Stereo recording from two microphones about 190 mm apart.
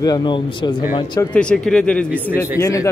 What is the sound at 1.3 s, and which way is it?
Speech, 5° left (ahead or behind).